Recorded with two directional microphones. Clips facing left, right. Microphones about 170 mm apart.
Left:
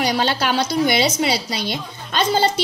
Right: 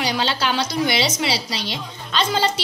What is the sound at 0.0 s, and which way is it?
A woman's voice, 50° left (ahead or behind).